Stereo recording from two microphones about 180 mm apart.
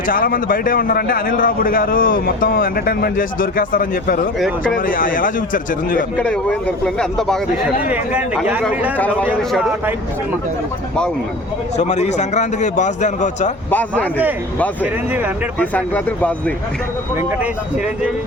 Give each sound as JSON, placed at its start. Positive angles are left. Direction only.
{"t": 0.1, "sound": "a man's voice", "side_deg": 50}
{"t": 6.1, "sound": "speech", "side_deg": 5}
{"t": 9.0, "sound": "speech", "side_deg": 10}
{"t": 9.5, "sound": "speech", "side_deg": -5}
{"t": 11.8, "sound": "a man's voice", "side_deg": 40}
{"t": 13.7, "sound": "speech", "side_deg": 10}
{"t": 15.5, "sound": "speech", "side_deg": 10}